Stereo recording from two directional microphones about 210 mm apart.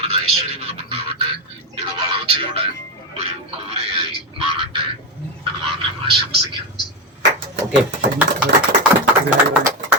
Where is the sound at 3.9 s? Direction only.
25° right (ahead or behind).